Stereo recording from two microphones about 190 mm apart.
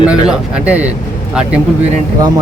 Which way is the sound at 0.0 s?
5° right (ahead or behind).